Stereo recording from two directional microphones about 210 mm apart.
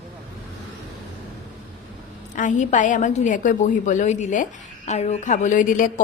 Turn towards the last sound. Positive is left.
turn(degrees=40)  # may be behind; listen again after turning